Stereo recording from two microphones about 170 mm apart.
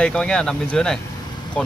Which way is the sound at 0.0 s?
5° left (ahead or behind).